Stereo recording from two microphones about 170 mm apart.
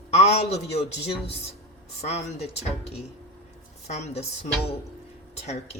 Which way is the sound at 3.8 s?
40° left (ahead or behind).